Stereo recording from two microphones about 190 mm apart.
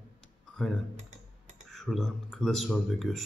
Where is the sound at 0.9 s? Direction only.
40° right (ahead or behind).